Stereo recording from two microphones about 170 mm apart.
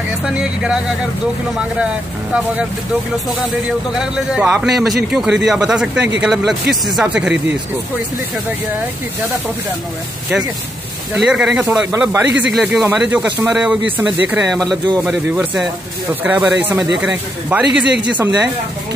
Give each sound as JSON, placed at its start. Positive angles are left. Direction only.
{"t": 0.2, "sound": "speech", "side_deg": -5}
{"t": 3.3, "sound": "speech", "side_deg": -5}
{"t": 11.1, "sound": "speech", "side_deg": -5}